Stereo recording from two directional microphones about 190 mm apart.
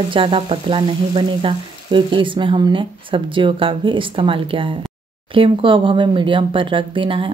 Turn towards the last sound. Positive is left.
turn(degrees=-25)  # may be behind; listen again after turning